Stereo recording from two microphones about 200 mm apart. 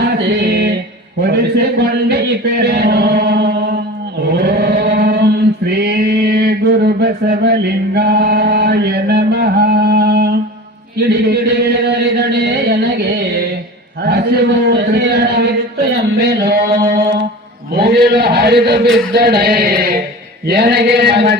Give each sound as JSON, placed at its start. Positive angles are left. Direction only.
{"t": 0.2, "sound": "music", "side_deg": -55}
{"t": 1.2, "sound": "a man's voice", "side_deg": -55}
{"t": 2.6, "sound": "music", "side_deg": -55}
{"t": 4.3, "sound": "chant", "side_deg": -55}
{"t": 14.0, "sound": "a sound", "side_deg": -55}